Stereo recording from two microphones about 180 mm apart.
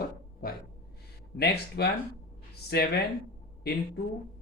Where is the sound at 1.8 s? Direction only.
65° left (ahead or behind).